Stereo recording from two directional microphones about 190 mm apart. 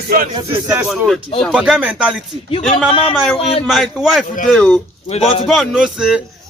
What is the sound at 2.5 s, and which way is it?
Speech, 30° left (ahead or behind).